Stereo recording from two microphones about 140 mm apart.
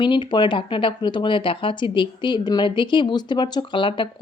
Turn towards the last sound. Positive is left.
turn(degrees=35)  # may be behind; listen again after turning